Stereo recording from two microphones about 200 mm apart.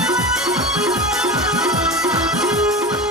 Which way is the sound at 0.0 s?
5° right (ahead or behind).